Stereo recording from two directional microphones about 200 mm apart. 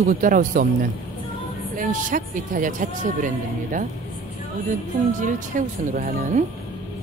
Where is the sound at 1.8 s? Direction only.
40° right (ahead or behind).